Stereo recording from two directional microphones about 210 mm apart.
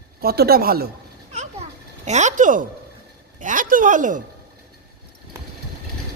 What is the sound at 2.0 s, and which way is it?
Speech, 35° right (ahead or behind).